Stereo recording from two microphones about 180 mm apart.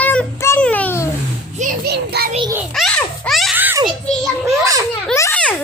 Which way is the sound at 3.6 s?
10° right (ahead or behind).